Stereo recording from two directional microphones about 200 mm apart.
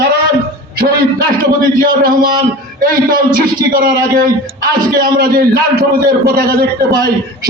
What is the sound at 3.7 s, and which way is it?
A man's voice, 45° right (ahead or behind).